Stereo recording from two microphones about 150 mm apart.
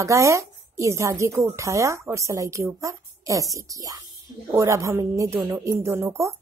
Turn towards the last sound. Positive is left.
turn(degrees=-20)  # may be behind; listen again after turning